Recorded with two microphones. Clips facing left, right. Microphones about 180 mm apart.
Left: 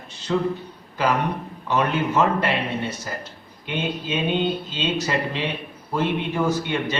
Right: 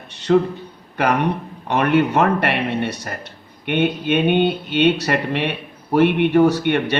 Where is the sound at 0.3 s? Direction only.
60° right (ahead or behind).